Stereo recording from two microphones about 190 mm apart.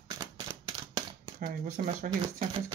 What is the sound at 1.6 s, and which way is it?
Speech, 45° right (ahead or behind).